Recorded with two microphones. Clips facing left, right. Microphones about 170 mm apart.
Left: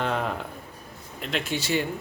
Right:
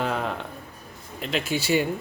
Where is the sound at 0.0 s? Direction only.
Centre (ahead or behind).